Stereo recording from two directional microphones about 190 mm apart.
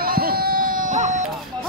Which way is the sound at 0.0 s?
50° right (ahead or behind).